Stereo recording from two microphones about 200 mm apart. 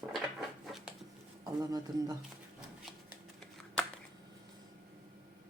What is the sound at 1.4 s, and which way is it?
Speech, 15° right (ahead or behind).